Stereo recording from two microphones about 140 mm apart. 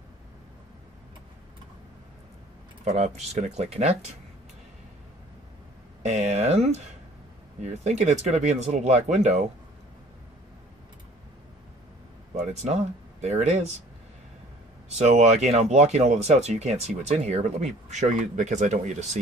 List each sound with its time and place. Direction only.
2.8 s speech: 50° right (ahead or behind)
6.0 s speech: 55° right (ahead or behind)
12.6 s speech: 55° right (ahead or behind)
14.9 s speech: 55° right (ahead or behind)